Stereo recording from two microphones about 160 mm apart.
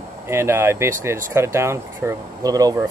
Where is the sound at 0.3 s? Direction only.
15° right (ahead or behind).